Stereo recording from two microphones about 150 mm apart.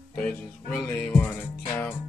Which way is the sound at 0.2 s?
5° left (ahead or behind).